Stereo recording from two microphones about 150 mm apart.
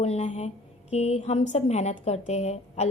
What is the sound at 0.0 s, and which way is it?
A woman's voice, 50° left (ahead or behind).